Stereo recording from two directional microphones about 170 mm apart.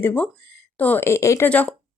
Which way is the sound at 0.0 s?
10° left (ahead or behind).